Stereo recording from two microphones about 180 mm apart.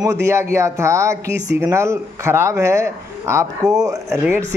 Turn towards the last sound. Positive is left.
turn(degrees=-15)  # may be behind; listen again after turning